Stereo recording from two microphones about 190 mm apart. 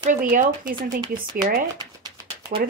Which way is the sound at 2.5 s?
40° right (ahead or behind).